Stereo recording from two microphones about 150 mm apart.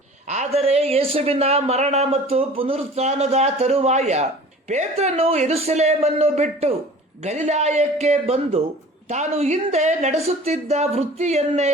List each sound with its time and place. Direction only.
0.3 s speech: 45° right (ahead or behind)